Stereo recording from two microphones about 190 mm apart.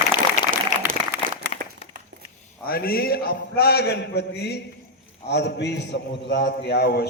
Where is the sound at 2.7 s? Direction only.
50° left (ahead or behind).